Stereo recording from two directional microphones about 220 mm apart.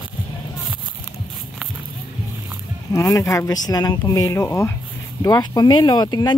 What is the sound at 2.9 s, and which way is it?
Speech, 15° left (ahead or behind).